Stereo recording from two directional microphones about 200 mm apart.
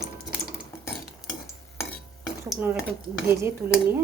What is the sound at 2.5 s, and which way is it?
Dishes, 5° right (ahead or behind).